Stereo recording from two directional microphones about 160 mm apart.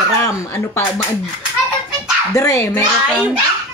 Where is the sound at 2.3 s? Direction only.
20° left (ahead or behind).